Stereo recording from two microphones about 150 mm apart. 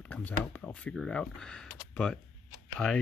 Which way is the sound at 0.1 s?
10° left (ahead or behind).